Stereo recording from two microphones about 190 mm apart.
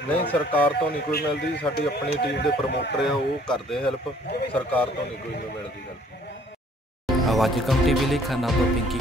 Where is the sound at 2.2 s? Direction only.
60° left (ahead or behind).